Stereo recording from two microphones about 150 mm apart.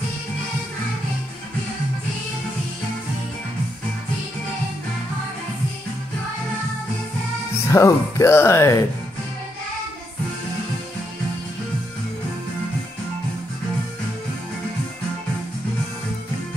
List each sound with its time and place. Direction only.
7.7 s speech: 20° left (ahead or behind)